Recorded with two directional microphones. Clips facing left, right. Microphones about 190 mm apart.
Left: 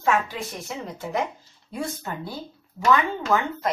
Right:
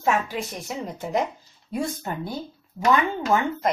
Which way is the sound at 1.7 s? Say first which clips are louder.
Right 3 dB; 15° right (ahead or behind).